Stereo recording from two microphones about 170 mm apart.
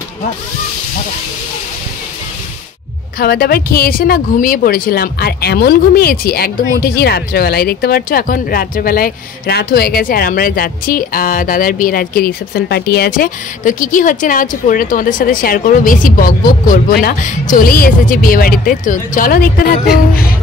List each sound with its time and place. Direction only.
3.2 s speech: 65° left (ahead or behind)